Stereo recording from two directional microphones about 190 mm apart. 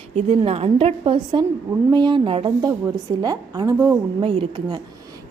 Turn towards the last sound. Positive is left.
turn(degrees=-30)  # may be behind; listen again after turning